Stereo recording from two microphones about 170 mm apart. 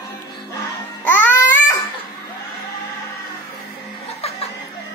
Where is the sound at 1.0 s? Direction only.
10° left (ahead or behind).